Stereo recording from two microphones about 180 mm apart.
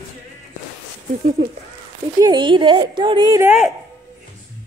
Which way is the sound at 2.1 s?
25° right (ahead or behind).